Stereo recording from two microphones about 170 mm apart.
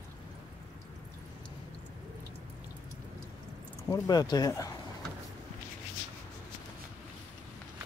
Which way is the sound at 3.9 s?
20° left (ahead or behind).